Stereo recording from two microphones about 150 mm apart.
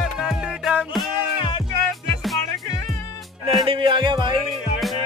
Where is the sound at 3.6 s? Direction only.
35° right (ahead or behind).